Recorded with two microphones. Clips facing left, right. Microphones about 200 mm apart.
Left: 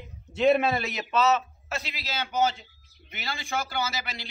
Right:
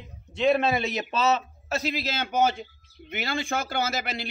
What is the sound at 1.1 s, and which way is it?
A man's voice, 30° right (ahead or behind).